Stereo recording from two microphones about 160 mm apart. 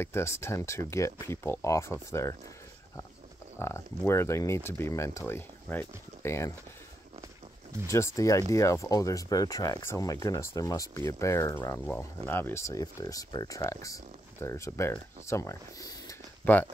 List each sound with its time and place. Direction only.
0.0 s speech: 15° left (ahead or behind)
3.5 s speech: 15° left (ahead or behind)
7.8 s speech: 20° left (ahead or behind)